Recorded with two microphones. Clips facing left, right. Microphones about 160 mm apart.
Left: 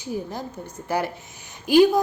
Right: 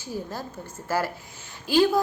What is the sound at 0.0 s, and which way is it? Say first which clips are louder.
A woman's voice: left 3 dB; 15° left (ahead or behind).